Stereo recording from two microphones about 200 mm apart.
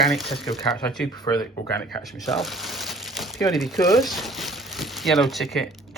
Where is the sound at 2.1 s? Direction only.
Centre (ahead or behind).